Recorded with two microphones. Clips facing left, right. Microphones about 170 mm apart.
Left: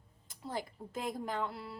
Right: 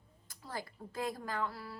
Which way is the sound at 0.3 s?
20° left (ahead or behind).